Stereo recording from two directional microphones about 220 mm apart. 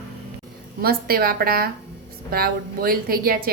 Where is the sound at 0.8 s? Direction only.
45° right (ahead or behind).